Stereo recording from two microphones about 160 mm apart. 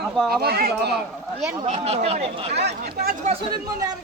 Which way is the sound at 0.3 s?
70° right (ahead or behind).